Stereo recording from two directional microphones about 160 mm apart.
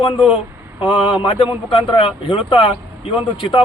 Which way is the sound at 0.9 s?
30° left (ahead or behind).